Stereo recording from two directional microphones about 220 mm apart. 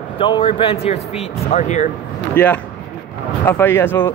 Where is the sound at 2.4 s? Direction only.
10° left (ahead or behind).